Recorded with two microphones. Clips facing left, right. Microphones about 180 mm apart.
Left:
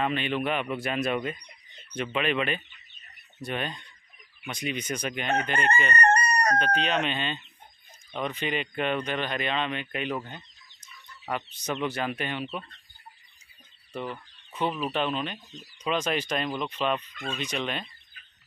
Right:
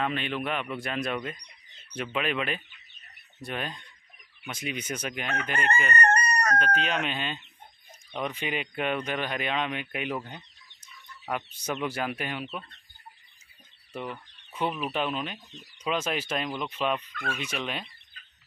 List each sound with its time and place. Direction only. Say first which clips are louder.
0.0 s speech: left 2 dB; centre (ahead or behind)
5.9 s chicken: left 2 dB; 35° left (ahead or behind)
6.6 s speech: left 2 dB; 5° right (ahead or behind)
13.9 s speech: left 1 dB; 5° right (ahead or behind)
17.1 s speech: even; 20° left (ahead or behind)
17.4 s speech: left 5 dB; 10° right (ahead or behind)